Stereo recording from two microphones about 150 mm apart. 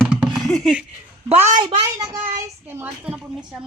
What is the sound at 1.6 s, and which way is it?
Speech, 35° right (ahead or behind).